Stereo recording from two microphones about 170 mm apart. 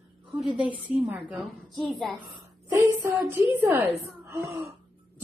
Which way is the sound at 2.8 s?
15° right (ahead or behind).